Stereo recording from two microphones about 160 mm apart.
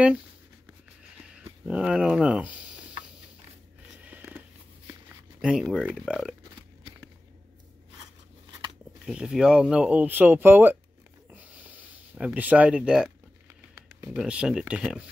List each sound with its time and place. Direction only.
1.3 s speech: 5° right (ahead or behind)
4.0 s a sound: 10° right (ahead or behind)
5.4 s speech: 5° right (ahead or behind)
9.0 s speech: 5° right (ahead or behind)
11.2 s a sound: 10° right (ahead or behind)
14.1 s speech: 5° right (ahead or behind)